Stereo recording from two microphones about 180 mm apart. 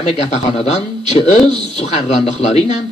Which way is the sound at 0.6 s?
40° left (ahead or behind).